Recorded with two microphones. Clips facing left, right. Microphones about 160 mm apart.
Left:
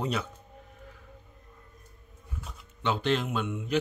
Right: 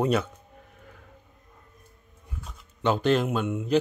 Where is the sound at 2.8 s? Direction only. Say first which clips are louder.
Right 5 dB; 45° right (ahead or behind).